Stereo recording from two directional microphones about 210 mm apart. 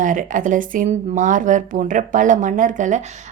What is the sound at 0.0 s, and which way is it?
Speech, 40° right (ahead or behind).